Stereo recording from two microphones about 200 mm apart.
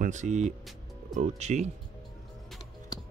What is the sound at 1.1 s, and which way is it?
Speech, 35° right (ahead or behind).